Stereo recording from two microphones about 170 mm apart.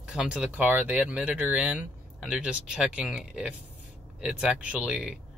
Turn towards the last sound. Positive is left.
turn(degrees=-5)  # may be behind; listen again after turning